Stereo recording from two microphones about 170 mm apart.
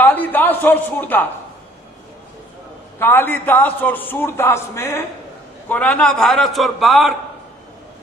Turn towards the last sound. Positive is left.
turn(degrees=0)  # may be behind; listen again after turning